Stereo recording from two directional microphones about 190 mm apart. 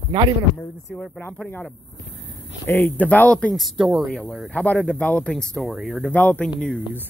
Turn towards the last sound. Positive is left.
turn(degrees=5)  # may be behind; listen again after turning